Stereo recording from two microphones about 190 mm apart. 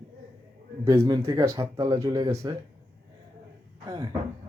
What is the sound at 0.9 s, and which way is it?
A man's voice, 20° right (ahead or behind).